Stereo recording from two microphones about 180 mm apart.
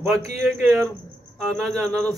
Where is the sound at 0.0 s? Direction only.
Centre (ahead or behind).